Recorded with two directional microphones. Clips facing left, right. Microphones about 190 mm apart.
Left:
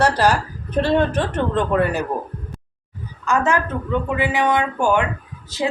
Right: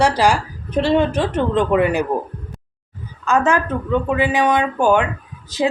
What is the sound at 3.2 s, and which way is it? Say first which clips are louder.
A woman's voice: right 2 dB; 20° right (ahead or behind).